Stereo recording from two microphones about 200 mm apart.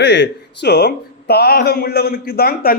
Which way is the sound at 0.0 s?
60° left (ahead or behind).